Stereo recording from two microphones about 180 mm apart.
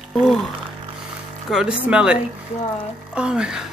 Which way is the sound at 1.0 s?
5° right (ahead or behind).